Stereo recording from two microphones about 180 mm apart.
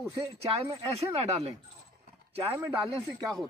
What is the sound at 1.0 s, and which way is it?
Speech, 35° right (ahead or behind).